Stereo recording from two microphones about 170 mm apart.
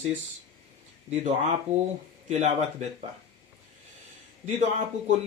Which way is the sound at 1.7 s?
40° right (ahead or behind).